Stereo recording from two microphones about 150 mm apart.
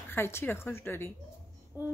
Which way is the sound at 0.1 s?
15° left (ahead or behind).